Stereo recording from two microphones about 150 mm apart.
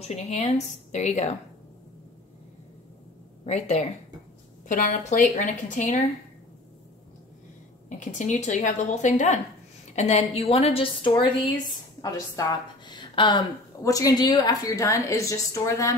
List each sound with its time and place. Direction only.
0.0 s a woman's voice: 50° left (ahead or behind)
3.4 s a woman's voice: 50° left (ahead or behind)
4.6 s a woman's voice: 60° left (ahead or behind)
8.0 s a woman's voice: 55° left (ahead or behind); by 15.9 s 20° left (ahead or behind)